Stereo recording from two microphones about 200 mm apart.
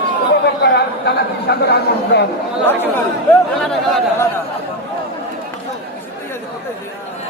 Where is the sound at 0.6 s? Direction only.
55° left (ahead or behind).